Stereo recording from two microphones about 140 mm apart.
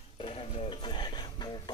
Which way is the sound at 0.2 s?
40° left (ahead or behind).